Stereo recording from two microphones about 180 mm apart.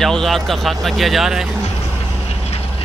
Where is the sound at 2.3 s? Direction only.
35° left (ahead or behind).